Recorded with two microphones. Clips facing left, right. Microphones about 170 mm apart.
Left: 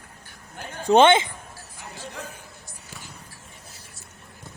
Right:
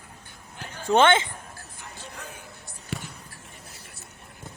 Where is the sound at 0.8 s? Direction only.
20° left (ahead or behind).